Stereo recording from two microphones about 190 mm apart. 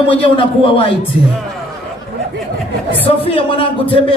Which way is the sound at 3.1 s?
30° left (ahead or behind).